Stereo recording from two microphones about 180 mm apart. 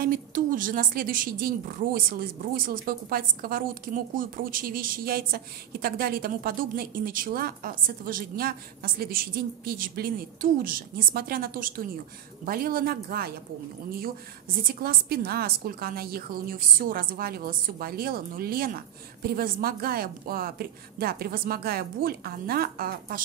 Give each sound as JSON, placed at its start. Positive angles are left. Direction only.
{"t": 0.0, "sound": "a woman's voice", "side_deg": -50}